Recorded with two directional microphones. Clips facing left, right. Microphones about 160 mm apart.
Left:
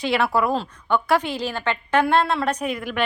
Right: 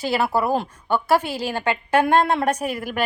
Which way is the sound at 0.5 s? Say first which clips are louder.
Right 1 dB; 5° right (ahead or behind).